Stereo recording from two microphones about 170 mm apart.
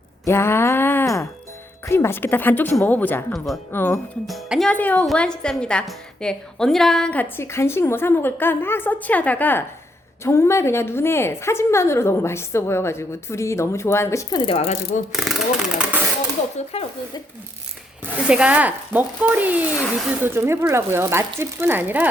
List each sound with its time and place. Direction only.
0.3 s a sound: 15° left (ahead or behind)
1.9 s a woman's voice: 15° left (ahead or behind)
3.3 s speech: centre (ahead or behind)
3.7 s a woman's voice: 15° left (ahead or behind)
4.3 s a woman's voice: centre (ahead or behind); by 15.0 s 35° left (ahead or behind)
15.1 s a sound: centre (ahead or behind)
16.7 s speech: 35° left (ahead or behind)
18.0 s speech: 5° right (ahead or behind)